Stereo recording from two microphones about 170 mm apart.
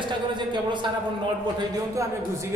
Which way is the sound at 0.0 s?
25° right (ahead or behind).